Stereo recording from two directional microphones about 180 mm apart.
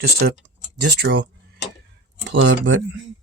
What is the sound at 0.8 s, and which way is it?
Speech, 70° right (ahead or behind).